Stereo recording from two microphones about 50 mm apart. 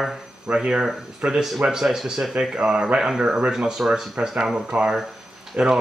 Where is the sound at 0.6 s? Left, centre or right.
Centre.